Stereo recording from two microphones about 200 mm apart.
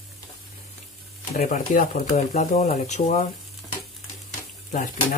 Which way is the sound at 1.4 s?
40° left (ahead or behind).